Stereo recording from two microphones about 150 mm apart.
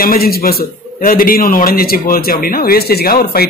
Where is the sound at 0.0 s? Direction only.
85° left.